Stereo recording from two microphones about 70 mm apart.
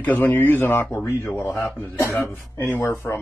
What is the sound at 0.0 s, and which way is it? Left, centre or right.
Speech, left.